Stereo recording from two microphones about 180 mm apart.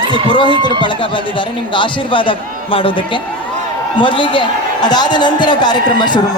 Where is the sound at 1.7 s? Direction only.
25° left (ahead or behind).